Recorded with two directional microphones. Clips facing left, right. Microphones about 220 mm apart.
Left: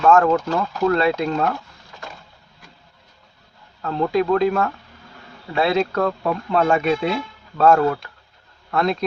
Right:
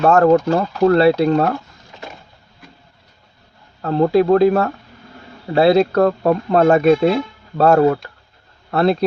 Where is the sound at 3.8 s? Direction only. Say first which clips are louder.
Right 6 dB; 35° right (ahead or behind).